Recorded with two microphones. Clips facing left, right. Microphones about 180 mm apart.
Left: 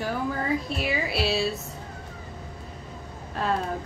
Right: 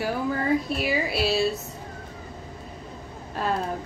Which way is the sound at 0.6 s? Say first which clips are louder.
Right 2 dB; centre (ahead or behind).